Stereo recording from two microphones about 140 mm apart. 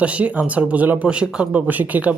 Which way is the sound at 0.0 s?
10° right (ahead or behind).